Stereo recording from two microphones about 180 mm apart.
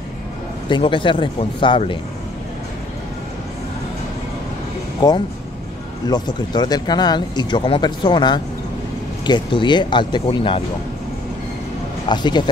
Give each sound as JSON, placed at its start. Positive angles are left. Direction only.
{"t": 0.7, "sound": "speech", "side_deg": 25}
{"t": 5.0, "sound": "speech", "side_deg": 20}
{"t": 12.1, "sound": "speech", "side_deg": 25}